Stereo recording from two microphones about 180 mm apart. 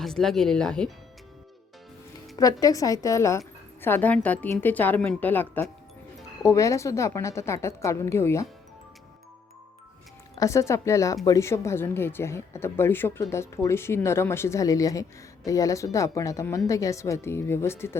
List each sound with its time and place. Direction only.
0.0 s speech: centre (ahead or behind)
2.3 s a woman's voice: 20° left (ahead or behind)
10.3 s a woman's voice: 15° left (ahead or behind)